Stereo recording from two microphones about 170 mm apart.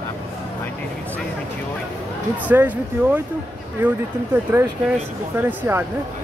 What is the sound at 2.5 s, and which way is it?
Speech, 10° right (ahead or behind).